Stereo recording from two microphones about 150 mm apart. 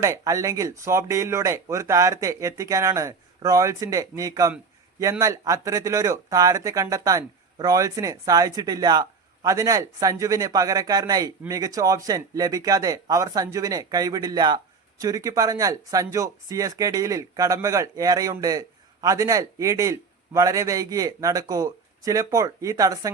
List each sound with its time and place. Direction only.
0.0 s speech: 20° right (ahead or behind)